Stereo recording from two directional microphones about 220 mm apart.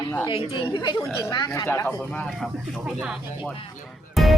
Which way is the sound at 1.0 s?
10° left (ahead or behind).